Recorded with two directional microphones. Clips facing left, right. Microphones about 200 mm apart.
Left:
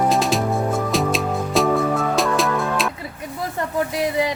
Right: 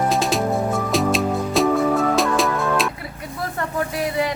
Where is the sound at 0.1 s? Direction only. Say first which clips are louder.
Left 1 dB; centre (ahead or behind).